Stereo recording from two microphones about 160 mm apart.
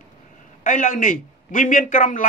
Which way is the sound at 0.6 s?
55° left (ahead or behind).